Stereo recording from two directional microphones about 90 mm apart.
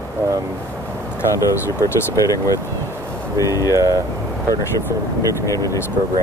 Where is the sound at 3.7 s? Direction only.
40° right (ahead or behind).